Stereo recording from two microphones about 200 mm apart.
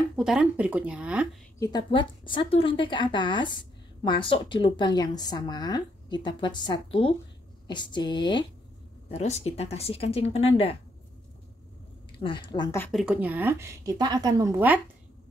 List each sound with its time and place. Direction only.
0.1 s speech: centre (ahead or behind)
1.6 s speech: 20° left (ahead or behind)
12.2 s speech: 25° left (ahead or behind)
12.9 s a woman's voice: 5° right (ahead or behind)